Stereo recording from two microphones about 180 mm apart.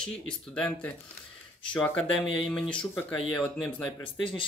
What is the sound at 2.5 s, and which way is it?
Speech, 5° left (ahead or behind).